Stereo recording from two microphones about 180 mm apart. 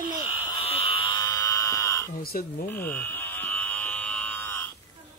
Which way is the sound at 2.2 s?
55° left (ahead or behind).